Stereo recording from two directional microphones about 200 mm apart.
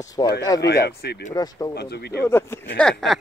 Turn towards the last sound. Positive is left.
turn(degrees=5)  # may be behind; listen again after turning